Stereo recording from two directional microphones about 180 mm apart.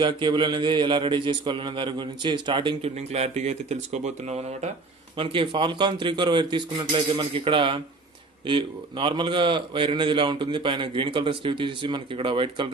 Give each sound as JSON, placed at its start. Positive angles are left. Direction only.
{"t": 0.0, "sound": "a man's voice", "side_deg": -25}